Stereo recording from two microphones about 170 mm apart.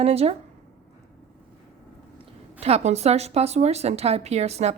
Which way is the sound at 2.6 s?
35° right (ahead or behind).